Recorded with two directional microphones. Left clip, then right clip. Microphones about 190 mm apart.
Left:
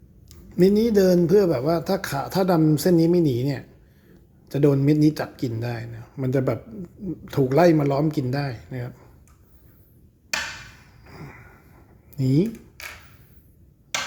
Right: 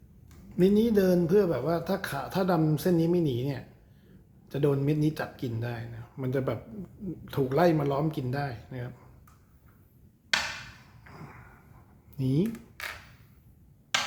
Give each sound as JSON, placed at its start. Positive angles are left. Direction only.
{"t": 0.5, "sound": "speech", "side_deg": 30}
{"t": 11.1, "sound": "a sound", "side_deg": 20}
{"t": 12.1, "sound": "speech", "side_deg": 30}